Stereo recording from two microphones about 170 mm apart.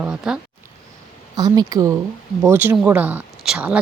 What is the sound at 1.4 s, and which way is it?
Speech, 25° right (ahead or behind).